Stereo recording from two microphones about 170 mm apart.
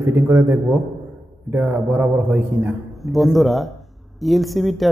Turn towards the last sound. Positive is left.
turn(degrees=0)  # may be behind; listen again after turning